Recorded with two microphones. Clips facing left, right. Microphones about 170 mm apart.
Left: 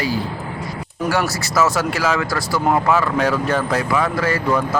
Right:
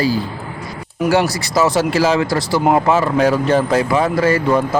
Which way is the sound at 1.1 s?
35° right (ahead or behind).